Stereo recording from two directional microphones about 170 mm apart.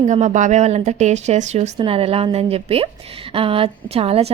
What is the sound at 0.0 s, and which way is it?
A woman's voice, 45° right (ahead or behind).